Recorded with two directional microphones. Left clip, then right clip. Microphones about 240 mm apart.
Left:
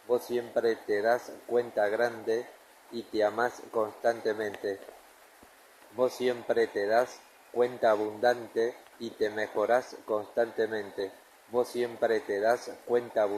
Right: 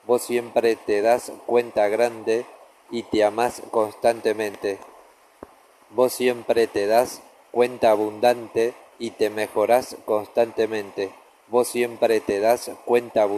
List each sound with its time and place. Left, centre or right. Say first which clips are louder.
0.1 s a man's voice: right 8 dB; right
6.0 s a man's voice: right 8 dB; right